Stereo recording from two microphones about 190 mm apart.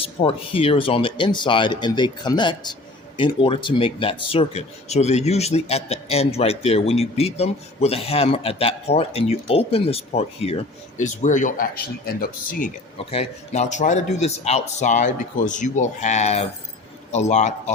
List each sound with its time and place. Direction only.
0.0 s speech: 30° left (ahead or behind); by 12.7 s 45° left (ahead or behind)
13.1 s speech: 35° left (ahead or behind)